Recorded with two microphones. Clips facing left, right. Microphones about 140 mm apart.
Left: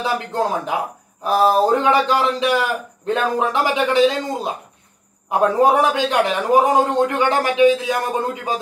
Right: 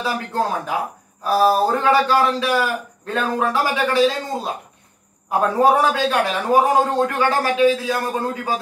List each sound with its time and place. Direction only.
0.0 s a man's voice: 20° left (ahead or behind)